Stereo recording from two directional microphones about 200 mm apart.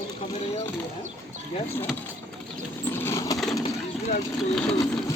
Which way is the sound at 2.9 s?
10° left (ahead or behind).